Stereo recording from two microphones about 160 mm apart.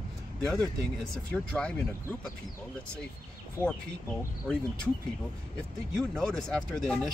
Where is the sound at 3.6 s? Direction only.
15° right (ahead or behind).